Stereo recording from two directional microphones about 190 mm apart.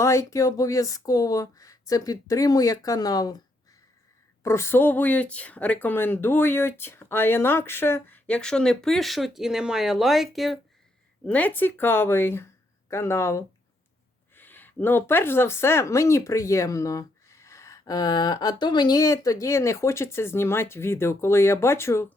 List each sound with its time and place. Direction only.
0.0 s speech: 15° left (ahead or behind)
4.4 s speech: 15° left (ahead or behind)